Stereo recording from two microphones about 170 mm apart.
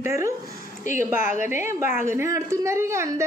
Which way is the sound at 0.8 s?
45° left (ahead or behind).